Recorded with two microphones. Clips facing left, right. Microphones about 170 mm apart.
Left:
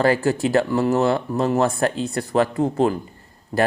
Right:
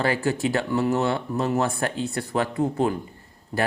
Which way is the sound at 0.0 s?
40° left (ahead or behind).